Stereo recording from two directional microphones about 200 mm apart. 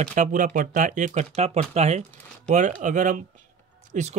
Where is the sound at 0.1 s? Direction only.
40° right (ahead or behind).